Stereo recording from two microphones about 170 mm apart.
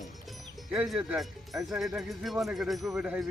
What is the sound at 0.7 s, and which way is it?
Speech, 5° right (ahead or behind).